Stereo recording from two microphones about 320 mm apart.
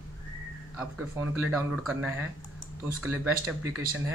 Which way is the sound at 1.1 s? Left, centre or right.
Centre.